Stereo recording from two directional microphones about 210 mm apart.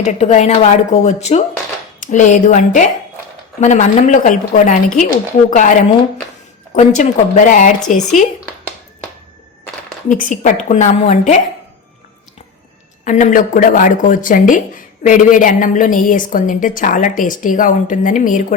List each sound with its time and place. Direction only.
0.0 s a woman's voice: 35° left (ahead or behind)
6.7 s a woman's voice: 35° left (ahead or behind)
10.1 s a woman's voice: 40° left (ahead or behind)
13.1 s a woman's voice: 35° left (ahead or behind)